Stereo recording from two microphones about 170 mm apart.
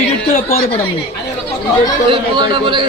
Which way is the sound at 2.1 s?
25° right (ahead or behind).